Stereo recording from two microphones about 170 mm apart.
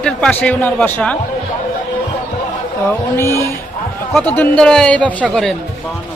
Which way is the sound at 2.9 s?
15° left (ahead or behind).